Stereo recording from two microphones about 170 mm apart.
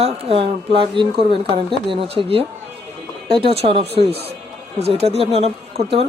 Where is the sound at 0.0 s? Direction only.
35° right (ahead or behind).